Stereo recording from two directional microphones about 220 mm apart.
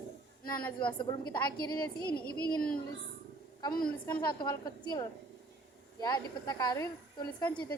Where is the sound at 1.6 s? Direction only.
45° left (ahead or behind).